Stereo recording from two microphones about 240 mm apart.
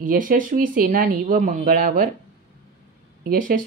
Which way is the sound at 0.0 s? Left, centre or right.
Right.